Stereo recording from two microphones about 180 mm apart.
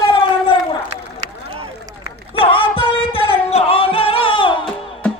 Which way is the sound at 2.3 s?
30° left (ahead or behind).